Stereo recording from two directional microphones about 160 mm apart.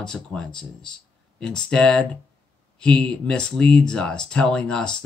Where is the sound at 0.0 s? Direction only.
5° left (ahead or behind).